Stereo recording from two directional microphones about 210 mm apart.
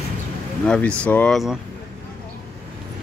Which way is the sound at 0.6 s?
5° left (ahead or behind).